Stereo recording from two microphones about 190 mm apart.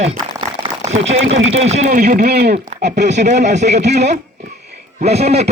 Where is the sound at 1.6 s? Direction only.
35° right (ahead or behind); by 3.0 s 65° right (ahead or behind).